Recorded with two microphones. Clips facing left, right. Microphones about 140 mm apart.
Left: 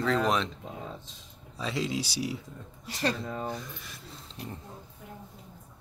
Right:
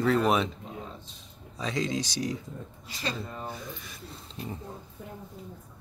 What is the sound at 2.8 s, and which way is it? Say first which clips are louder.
Speech: left 5 dB; 65° left (ahead or behind).